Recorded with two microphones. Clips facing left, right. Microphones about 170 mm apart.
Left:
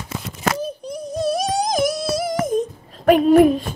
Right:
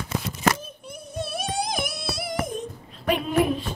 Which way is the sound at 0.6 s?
35° left (ahead or behind).